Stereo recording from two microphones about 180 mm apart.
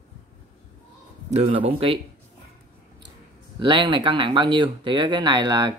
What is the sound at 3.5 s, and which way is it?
Speech, 25° right (ahead or behind).